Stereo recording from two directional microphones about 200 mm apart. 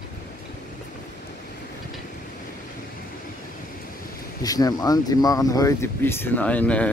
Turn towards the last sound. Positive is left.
turn(degrees=5)  # may be behind; listen again after turning